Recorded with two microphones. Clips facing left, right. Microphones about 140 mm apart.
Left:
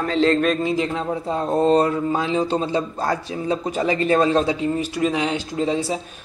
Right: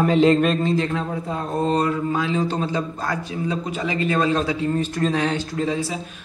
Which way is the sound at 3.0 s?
35° left (ahead or behind).